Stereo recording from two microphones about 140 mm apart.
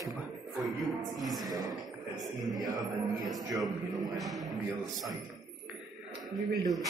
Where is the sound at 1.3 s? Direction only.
25° right (ahead or behind).